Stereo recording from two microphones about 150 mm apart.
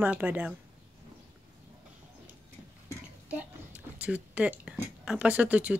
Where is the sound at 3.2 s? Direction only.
10° right (ahead or behind).